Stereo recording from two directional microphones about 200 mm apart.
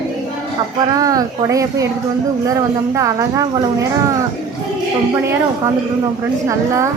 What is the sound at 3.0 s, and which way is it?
Speech, 15° right (ahead or behind).